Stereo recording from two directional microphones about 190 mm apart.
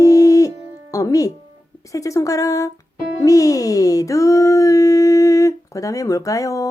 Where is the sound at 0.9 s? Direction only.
15° left (ahead or behind).